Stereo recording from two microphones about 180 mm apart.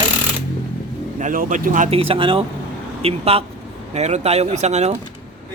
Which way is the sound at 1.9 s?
30° right (ahead or behind).